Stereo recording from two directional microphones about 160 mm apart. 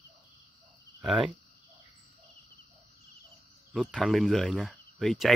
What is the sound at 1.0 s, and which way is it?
Speech, 5° right (ahead or behind).